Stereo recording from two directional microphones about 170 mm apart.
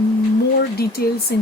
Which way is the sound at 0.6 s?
70° left (ahead or behind).